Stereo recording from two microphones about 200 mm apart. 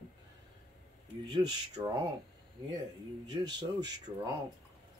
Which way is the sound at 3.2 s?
20° right (ahead or behind).